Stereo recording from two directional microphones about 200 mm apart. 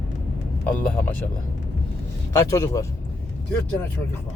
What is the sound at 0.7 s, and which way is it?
Speech, 5° left (ahead or behind).